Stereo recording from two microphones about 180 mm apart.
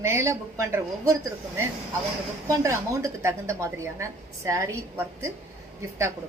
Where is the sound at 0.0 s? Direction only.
15° right (ahead or behind).